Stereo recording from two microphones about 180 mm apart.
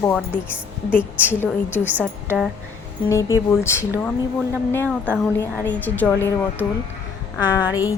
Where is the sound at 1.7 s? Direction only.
10° right (ahead or behind).